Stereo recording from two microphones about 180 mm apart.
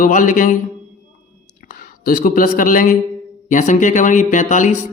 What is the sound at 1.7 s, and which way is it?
Speech, 50° left (ahead or behind).